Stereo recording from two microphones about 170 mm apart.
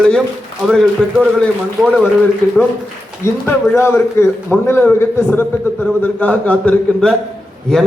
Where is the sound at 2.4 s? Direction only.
15° left (ahead or behind).